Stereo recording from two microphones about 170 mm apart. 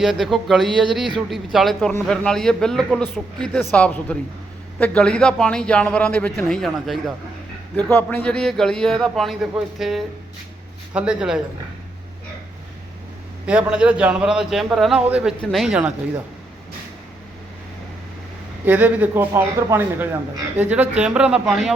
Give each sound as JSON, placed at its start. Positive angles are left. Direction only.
{"t": 0.0, "sound": "a man's voice", "side_deg": 0}
{"t": 7.8, "sound": "a man's voice", "side_deg": 10}
{"t": 13.4, "sound": "a man's voice", "side_deg": -5}
{"t": 18.6, "sound": "a man's voice", "side_deg": -10}